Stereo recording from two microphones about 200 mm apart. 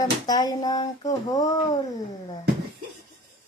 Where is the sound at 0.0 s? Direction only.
20° left (ahead or behind).